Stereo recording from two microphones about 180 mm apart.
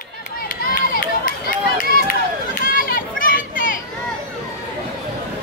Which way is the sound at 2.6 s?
50° left (ahead or behind).